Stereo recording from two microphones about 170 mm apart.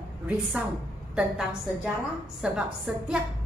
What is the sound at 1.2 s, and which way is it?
A woman's voice, 5° right (ahead or behind).